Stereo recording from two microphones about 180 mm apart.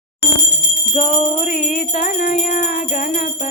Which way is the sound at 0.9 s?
45° left (ahead or behind).